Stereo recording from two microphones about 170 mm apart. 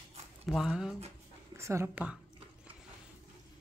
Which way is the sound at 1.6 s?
15° right (ahead or behind).